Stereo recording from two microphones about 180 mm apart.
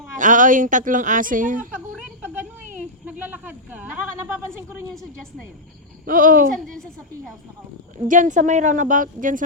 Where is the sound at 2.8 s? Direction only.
10° right (ahead or behind).